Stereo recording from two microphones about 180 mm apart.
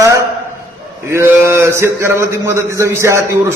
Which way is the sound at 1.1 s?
15° right (ahead or behind).